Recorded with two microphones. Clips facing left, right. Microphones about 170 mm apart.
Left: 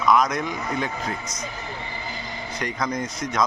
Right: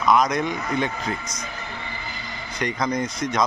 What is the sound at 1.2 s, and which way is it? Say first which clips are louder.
Speech: left 1 dB; 25° left (ahead or behind).